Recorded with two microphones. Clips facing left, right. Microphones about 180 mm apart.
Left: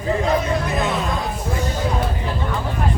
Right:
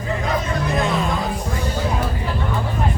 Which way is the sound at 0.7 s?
Centre (ahead or behind).